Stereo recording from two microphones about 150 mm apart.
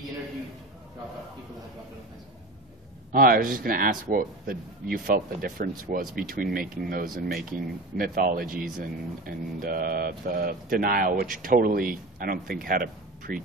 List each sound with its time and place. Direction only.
3.1 s speech: 75° right (ahead or behind)
7.2 s speech: 85° right